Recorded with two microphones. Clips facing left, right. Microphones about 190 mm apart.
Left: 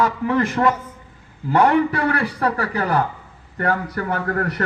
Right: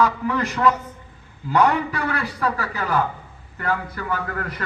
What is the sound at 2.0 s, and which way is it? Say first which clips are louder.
Speech: left 4 dB; 35° left (ahead or behind).